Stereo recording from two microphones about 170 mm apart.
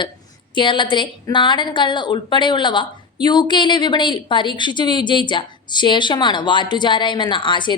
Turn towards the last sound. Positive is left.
turn(degrees=30)  # may be behind; listen again after turning